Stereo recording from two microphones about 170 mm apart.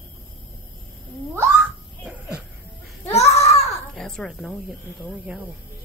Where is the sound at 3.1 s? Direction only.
40° left (ahead or behind).